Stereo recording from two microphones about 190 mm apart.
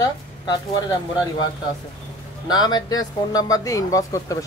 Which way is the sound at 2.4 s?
20° left (ahead or behind).